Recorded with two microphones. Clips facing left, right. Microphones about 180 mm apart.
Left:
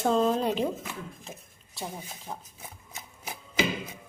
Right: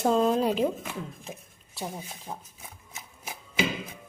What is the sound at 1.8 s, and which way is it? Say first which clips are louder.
Speech: right 2 dB; 5° right (ahead or behind).